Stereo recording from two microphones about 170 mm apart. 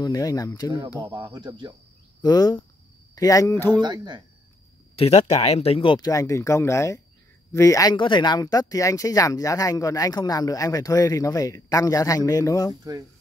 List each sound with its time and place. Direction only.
0.0 s speech: 20° left (ahead or behind)
1.0 s speech: 20° right (ahead or behind)
2.2 s speech: 25° left (ahead or behind)
3.8 s speech: 25° right (ahead or behind)
4.9 s speech: 35° left (ahead or behind); by 12.7 s 20° left (ahead or behind)